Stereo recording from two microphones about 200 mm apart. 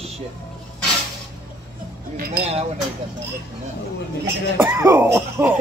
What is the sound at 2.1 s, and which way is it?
Speech, 50° right (ahead or behind).